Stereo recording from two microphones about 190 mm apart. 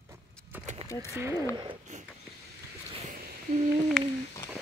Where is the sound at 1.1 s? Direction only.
15° right (ahead or behind).